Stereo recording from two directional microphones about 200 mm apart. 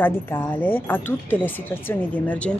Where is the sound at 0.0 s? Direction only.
10° left (ahead or behind).